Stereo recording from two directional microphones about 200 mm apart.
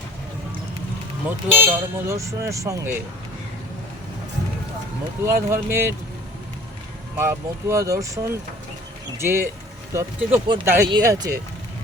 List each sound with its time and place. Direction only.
1.6 s speech: 15° right (ahead or behind)
5.2 s speech: 15° right (ahead or behind)
7.2 s speech: 15° right (ahead or behind)